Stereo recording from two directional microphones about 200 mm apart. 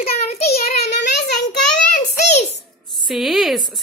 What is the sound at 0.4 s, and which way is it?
Child singing, 50° left (ahead or behind).